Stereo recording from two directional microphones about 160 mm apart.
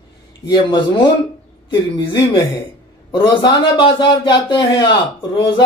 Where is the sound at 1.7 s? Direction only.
30° left (ahead or behind).